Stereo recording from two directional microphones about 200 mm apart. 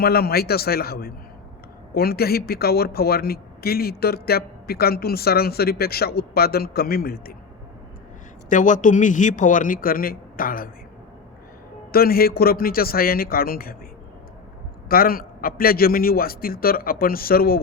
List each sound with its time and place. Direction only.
0.0 s a man's voice: 50° left (ahead or behind)
8.4 s a man's voice: 40° left (ahead or behind)
11.9 s a man's voice: 50° left (ahead or behind)
14.8 s a man's voice: 45° left (ahead or behind)